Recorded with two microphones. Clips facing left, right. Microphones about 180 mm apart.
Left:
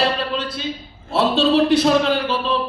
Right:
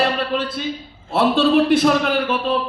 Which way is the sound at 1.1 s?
50° right (ahead or behind).